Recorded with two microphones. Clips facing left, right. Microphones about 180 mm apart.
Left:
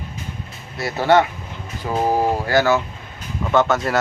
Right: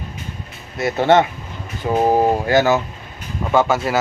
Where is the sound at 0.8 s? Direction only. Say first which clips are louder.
Right 2 dB; 20° right (ahead or behind).